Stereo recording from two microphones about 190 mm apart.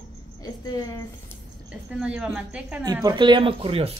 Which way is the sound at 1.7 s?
5° right (ahead or behind).